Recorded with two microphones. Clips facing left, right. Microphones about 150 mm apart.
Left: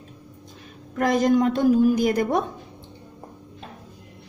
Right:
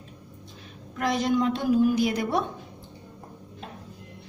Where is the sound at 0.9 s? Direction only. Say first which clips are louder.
Left 5 dB; 45° left (ahead or behind).